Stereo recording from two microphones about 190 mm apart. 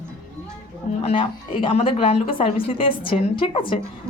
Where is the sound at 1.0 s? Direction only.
30° left (ahead or behind).